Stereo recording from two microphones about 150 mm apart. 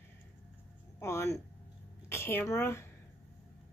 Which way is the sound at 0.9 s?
20° left (ahead or behind).